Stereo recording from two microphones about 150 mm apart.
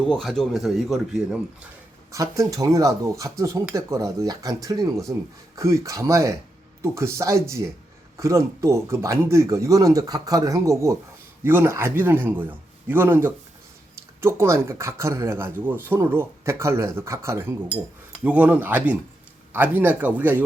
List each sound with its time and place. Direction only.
0.0 s speech: 5° left (ahead or behind)
2.1 s speech: 20° right (ahead or behind)